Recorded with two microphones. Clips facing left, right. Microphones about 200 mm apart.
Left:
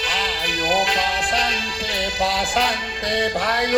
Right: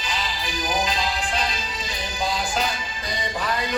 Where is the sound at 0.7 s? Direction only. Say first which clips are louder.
Left 4 dB; 80° left.